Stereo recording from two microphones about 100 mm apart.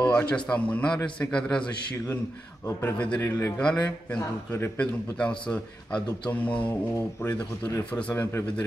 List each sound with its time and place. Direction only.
0.0 s a man's voice: 15° left (ahead or behind)
2.8 s a man's voice: 15° left (ahead or behind)
3.5 s a man's voice: 10° left (ahead or behind)
5.2 s a man's voice: 10° left (ahead or behind)
7.9 s a man's voice: 20° left (ahead or behind)